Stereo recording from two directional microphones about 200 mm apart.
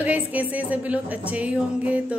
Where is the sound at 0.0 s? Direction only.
10° right (ahead or behind).